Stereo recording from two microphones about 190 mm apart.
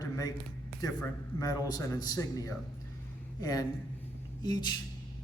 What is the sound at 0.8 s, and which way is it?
A man's voice, 20° left (ahead or behind).